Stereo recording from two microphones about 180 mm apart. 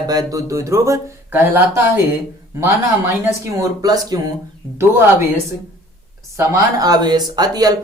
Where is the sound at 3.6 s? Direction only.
20° right (ahead or behind).